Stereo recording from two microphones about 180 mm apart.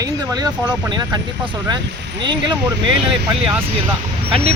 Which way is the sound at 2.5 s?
25° right (ahead or behind).